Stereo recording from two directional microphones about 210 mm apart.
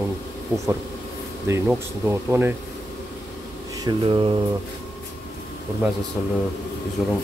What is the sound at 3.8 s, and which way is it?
Speech, 25° right (ahead or behind).